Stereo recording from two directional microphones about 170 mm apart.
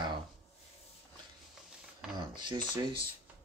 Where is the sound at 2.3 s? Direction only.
25° right (ahead or behind).